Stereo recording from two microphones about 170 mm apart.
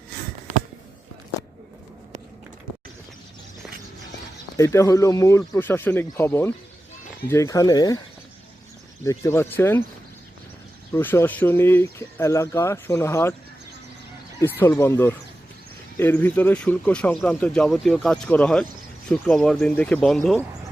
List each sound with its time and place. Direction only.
4.5 s speech: 15° left (ahead or behind)
9.0 s speech: 15° left (ahead or behind)
10.9 s speech: 15° left (ahead or behind)
14.6 s speech: 15° left (ahead or behind)